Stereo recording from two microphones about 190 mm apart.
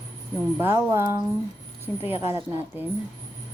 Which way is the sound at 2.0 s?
30° left (ahead or behind).